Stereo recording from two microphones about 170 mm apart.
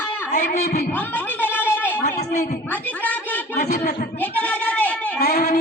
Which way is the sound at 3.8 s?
60° left (ahead or behind).